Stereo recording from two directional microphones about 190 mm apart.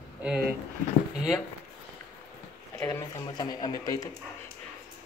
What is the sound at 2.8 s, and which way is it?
Speech, 15° left (ahead or behind).